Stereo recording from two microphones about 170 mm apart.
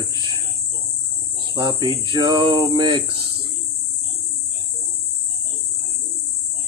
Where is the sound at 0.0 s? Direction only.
25° right (ahead or behind).